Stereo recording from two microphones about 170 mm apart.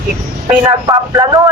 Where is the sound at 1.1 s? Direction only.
20° right (ahead or behind).